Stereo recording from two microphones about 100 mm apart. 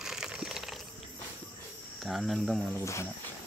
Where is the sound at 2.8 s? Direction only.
30° left (ahead or behind).